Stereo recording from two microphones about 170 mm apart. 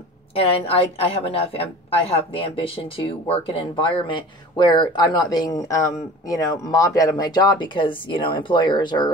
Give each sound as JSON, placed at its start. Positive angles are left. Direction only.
{"t": 0.3, "sound": "a woman's voice", "side_deg": 35}